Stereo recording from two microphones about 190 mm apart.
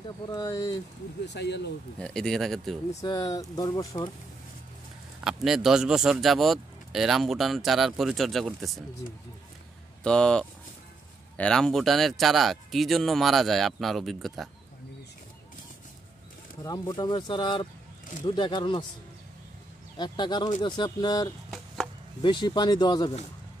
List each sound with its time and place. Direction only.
0.3 s speech: 20° left (ahead or behind)
1.2 s speech: 65° left (ahead or behind)
2.0 s speech: 5° left (ahead or behind)
3.0 s speech: 20° left (ahead or behind)
5.2 s speech: centre (ahead or behind)
10.0 s speech: 5° left (ahead or behind)
16.6 s speech: 20° left (ahead or behind)
20.0 s speech: 25° left (ahead or behind)